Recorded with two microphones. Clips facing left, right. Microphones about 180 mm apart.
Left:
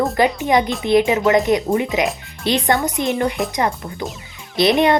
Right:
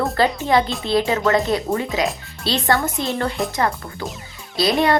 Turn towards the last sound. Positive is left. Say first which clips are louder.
# left 3 dB
turn(degrees=20)  # may be behind; listen again after turning